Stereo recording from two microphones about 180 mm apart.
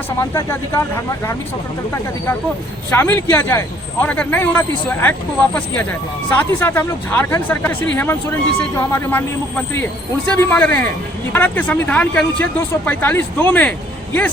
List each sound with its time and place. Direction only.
0.2 s a man's voice: 15° left (ahead or behind)
2.9 s a man's voice: 10° left (ahead or behind)
6.3 s a man's voice: 10° left (ahead or behind)